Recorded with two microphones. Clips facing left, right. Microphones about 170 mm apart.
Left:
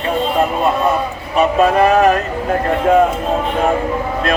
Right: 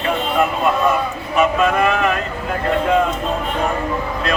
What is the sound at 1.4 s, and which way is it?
Speech, 35° left (ahead or behind).